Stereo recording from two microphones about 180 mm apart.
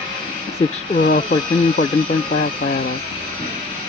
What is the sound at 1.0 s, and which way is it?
Speech, 50° left (ahead or behind).